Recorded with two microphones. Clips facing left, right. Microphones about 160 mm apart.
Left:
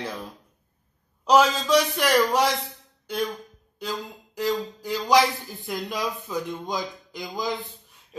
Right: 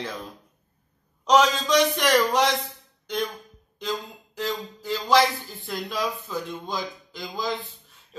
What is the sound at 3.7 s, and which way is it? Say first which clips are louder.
Speech: right 1 dB; 10° left (ahead or behind).